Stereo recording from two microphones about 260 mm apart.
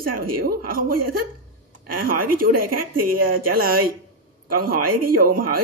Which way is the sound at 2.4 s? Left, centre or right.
Right.